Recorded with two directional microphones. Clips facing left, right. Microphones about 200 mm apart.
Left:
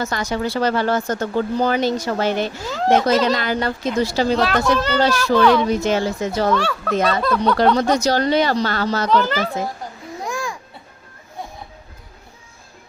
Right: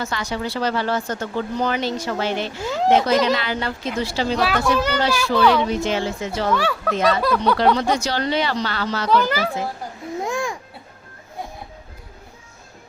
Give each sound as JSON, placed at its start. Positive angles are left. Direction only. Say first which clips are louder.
{"t": 0.0, "sound": "speech", "louder": "left 3 dB", "side_deg": 45}
{"t": 2.6, "sound": "speech", "louder": "right 6 dB", "side_deg": -15}
{"t": 3.3, "sound": "speech", "louder": "left 3 dB", "side_deg": 45}
{"t": 4.4, "sound": "speech", "louder": "left 2 dB", "side_deg": -10}
{"t": 5.6, "sound": "speech", "louder": "left 3 dB", "side_deg": 45}
{"t": 6.6, "sound": "speech", "louder": "left 1 dB", "side_deg": -10}
{"t": 7.8, "sound": "speech", "louder": "left 4 dB", "side_deg": 40}
{"t": 9.0, "sound": "speech", "louder": "right 1 dB", "side_deg": -10}
{"t": 10.2, "sound": "babbling", "louder": "right 2 dB", "side_deg": -25}